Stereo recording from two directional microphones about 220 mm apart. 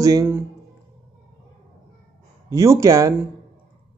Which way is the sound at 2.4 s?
15° right (ahead or behind).